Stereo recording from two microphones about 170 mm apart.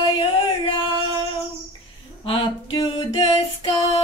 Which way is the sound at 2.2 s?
30° left (ahead or behind).